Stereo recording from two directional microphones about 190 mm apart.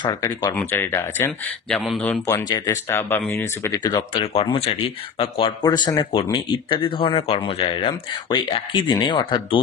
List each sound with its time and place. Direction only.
0.0 s speech: 20° left (ahead or behind)
1.8 s speech: centre (ahead or behind)
2.2 s speech: 20° left (ahead or behind)
4.2 s speech: 30° left (ahead or behind)